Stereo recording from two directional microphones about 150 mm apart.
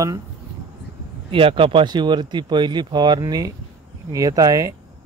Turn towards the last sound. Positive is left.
turn(degrees=-25)  # may be behind; listen again after turning